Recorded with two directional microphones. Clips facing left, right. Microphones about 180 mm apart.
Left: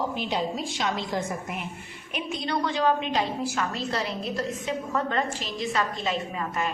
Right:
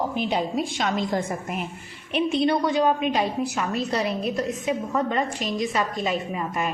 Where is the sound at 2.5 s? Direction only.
20° right (ahead or behind).